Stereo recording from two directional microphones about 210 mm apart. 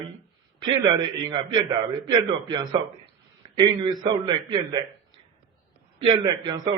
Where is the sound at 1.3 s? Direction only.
20° right (ahead or behind).